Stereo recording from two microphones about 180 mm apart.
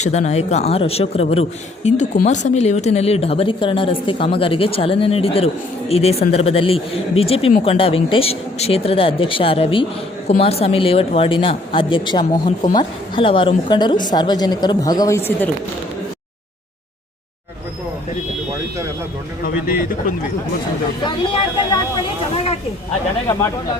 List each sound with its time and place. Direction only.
0.0 s speech: 40° left (ahead or behind); by 15.4 s 15° left (ahead or behind)
19.5 s speech: 50° left (ahead or behind)
21.0 s speech: 25° left (ahead or behind)